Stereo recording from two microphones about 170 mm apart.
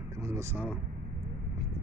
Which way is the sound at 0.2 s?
15° right (ahead or behind).